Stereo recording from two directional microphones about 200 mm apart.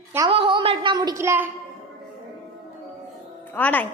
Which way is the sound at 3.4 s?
10° left (ahead or behind).